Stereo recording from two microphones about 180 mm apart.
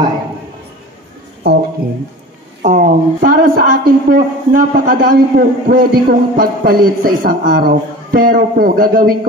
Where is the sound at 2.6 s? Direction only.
45° right (ahead or behind).